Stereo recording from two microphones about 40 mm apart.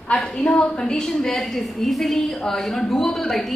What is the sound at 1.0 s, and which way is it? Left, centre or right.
A woman's voice, centre.